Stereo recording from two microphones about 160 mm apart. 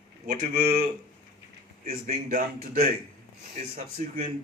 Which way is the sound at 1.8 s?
50° right (ahead or behind).